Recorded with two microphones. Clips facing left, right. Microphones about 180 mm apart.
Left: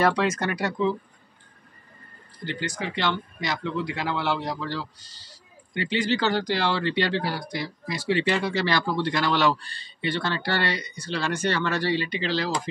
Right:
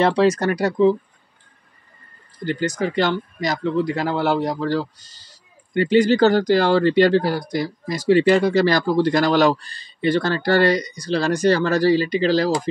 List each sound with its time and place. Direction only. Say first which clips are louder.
0.0 s speech: right 6 dB; 30° right (ahead or behind)
2.4 s speech: right 9 dB; 45° right (ahead or behind)